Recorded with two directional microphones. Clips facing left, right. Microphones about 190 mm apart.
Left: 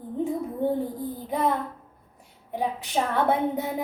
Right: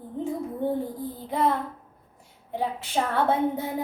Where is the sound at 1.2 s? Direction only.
15° left (ahead or behind).